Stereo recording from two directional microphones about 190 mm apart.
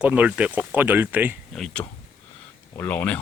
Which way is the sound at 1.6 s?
5° left (ahead or behind).